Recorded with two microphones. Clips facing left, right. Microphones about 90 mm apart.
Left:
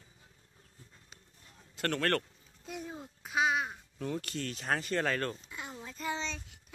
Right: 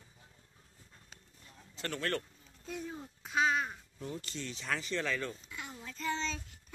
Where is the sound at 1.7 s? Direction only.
65° left (ahead or behind).